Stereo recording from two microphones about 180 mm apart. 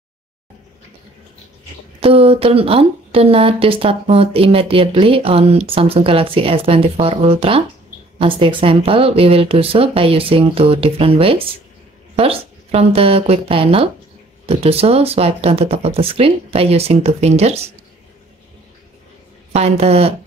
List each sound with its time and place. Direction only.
2.0 s speech: 30° right (ahead or behind)
19.5 s speech: 35° right (ahead or behind)